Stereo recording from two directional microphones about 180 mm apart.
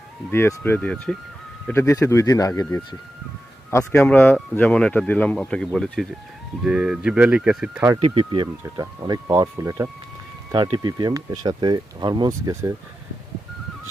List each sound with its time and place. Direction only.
0.3 s speech: 10° left (ahead or behind); by 7.9 s 5° right (ahead or behind)
7.9 s speech: 30° right (ahead or behind)